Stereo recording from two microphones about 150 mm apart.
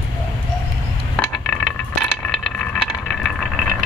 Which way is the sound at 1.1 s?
10° left (ahead or behind).